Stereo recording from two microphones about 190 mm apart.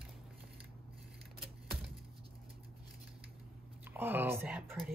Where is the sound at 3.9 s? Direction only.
10° right (ahead or behind).